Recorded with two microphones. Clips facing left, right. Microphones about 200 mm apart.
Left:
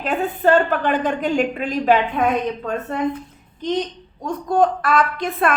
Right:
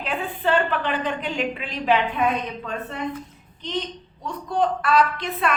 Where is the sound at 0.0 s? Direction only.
45° left (ahead or behind).